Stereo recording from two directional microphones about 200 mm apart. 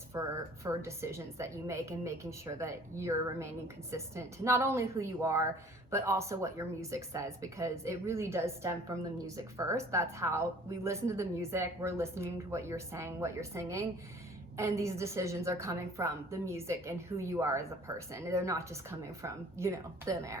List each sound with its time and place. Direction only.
0.1 s a woman's voice: 15° right (ahead or behind)